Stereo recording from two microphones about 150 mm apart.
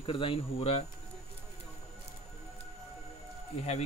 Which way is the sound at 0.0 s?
35° left (ahead or behind).